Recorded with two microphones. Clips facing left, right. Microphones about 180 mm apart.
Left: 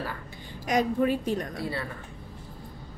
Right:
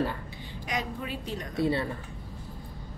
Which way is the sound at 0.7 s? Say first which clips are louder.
Left 10 dB; 45° left (ahead or behind).